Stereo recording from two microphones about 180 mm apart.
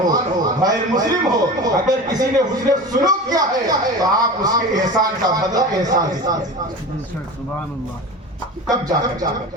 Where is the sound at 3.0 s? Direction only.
20° right (ahead or behind).